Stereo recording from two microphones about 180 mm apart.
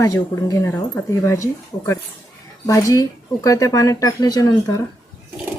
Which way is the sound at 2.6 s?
20° left (ahead or behind).